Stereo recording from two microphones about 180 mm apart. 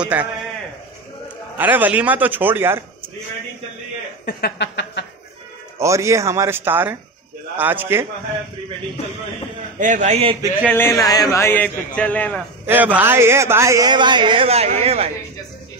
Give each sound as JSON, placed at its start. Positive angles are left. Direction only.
{"t": 0.0, "sound": "speech", "side_deg": -10}
{"t": 1.6, "sound": "speech", "side_deg": -10}
{"t": 4.3, "sound": "a sound", "side_deg": 60}
{"t": 5.8, "sound": "speech", "side_deg": -15}
{"t": 9.8, "sound": "a man's voice", "side_deg": -45}
{"t": 10.7, "sound": "a man's voice", "side_deg": 15}
{"t": 12.6, "sound": "speech", "side_deg": -10}